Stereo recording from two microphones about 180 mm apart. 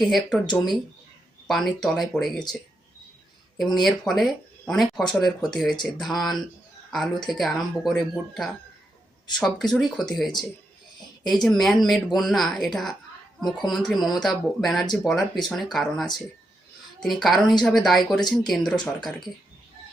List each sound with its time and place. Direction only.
0.0 s speech: centre (ahead or behind)
3.6 s speech: centre (ahead or behind)